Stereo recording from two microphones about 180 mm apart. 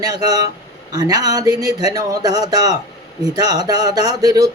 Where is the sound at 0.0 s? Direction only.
20° right (ahead or behind).